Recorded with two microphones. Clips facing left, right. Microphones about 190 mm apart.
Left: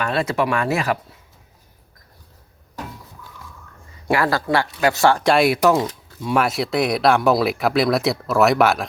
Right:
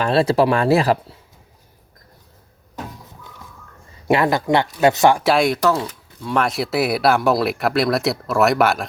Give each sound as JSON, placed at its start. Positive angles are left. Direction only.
{"t": 0.0, "sound": "speech", "side_deg": -30}
{"t": 4.1, "sound": "speech", "side_deg": -20}
{"t": 5.2, "sound": "speech", "side_deg": 0}
{"t": 5.6, "sound": "speech", "side_deg": 15}